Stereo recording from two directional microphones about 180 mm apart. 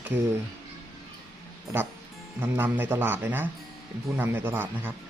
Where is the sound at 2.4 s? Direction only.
10° right (ahead or behind).